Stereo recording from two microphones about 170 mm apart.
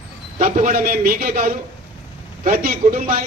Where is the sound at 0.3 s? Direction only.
50° right (ahead or behind).